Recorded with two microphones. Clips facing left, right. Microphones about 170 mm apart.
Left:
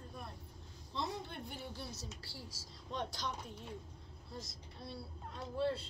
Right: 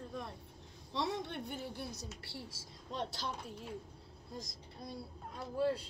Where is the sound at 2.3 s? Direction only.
60° right (ahead or behind).